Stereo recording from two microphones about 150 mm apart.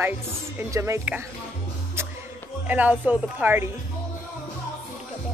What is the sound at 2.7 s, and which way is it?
Speech, 10° right (ahead or behind).